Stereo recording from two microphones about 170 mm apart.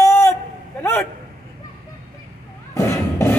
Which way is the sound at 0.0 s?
15° left (ahead or behind).